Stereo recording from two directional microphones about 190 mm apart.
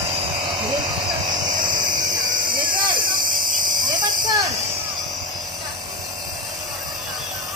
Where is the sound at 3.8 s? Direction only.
20° right (ahead or behind).